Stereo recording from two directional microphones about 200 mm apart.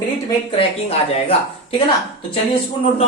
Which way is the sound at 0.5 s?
30° left (ahead or behind).